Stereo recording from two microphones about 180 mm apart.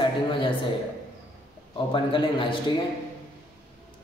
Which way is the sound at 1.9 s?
30° left (ahead or behind).